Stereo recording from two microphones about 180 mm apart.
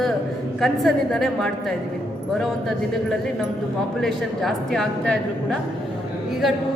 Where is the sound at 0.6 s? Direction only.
Centre (ahead or behind).